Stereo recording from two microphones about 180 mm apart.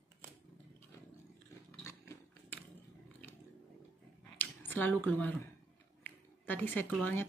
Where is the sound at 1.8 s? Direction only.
15° left (ahead or behind).